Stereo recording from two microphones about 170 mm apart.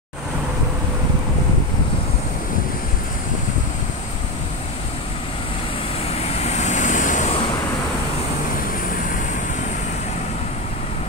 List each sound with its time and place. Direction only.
6.1 s vehicle: 40° left (ahead or behind)